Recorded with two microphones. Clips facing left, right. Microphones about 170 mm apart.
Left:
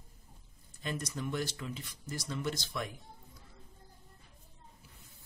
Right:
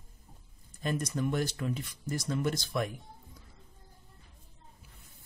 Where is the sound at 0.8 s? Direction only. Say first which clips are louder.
Right 6 dB; 50° right (ahead or behind).